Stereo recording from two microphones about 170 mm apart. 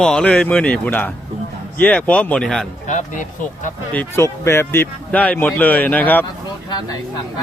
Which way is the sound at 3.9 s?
10° left (ahead or behind).